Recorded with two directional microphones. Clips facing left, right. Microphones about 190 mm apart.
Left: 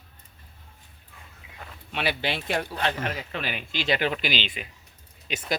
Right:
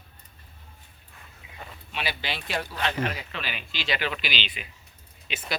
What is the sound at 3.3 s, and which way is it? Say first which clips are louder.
Speech: left 4 dB; 50° left (ahead or behind).